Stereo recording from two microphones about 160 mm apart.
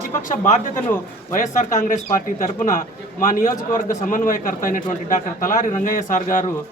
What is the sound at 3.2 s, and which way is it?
A man's voice, 60° left (ahead or behind).